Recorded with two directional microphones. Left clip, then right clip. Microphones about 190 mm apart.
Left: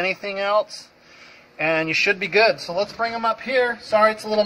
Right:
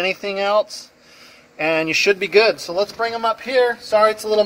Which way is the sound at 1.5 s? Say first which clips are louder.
Right 2 dB; 65° right (ahead or behind).